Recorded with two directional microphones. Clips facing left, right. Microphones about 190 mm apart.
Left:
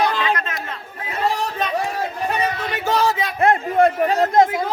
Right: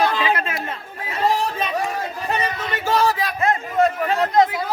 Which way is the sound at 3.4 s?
55° left (ahead or behind).